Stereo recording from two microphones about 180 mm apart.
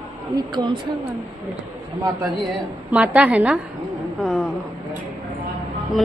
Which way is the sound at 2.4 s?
Centre (ahead or behind).